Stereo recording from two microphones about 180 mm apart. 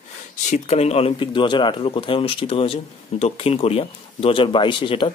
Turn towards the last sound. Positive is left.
turn(degrees=30)  # may be behind; listen again after turning